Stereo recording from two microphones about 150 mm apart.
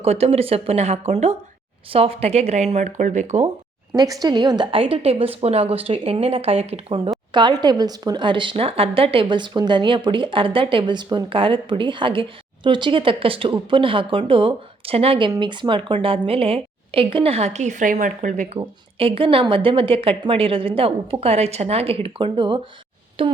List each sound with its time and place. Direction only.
0.0 s speech: 45° right (ahead or behind)
3.9 s a woman's voice: 25° right (ahead or behind); by 18.6 s 55° right (ahead or behind)
18.6 s a woman's voice: 40° right (ahead or behind)